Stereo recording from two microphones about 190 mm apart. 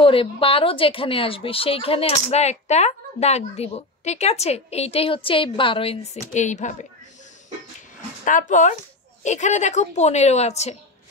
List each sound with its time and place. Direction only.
0.0 s speech: 30° left (ahead or behind)
8.3 s speech: 40° left (ahead or behind)